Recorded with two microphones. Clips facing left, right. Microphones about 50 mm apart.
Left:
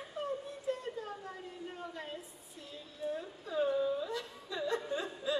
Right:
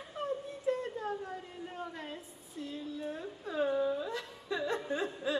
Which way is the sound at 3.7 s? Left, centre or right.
Right.